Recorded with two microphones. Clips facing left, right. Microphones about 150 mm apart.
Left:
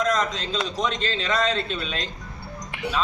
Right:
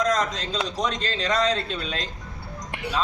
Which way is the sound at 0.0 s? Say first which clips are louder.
Even; 35° right (ahead or behind).